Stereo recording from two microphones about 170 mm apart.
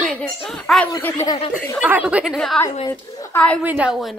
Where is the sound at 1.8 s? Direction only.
10° right (ahead or behind).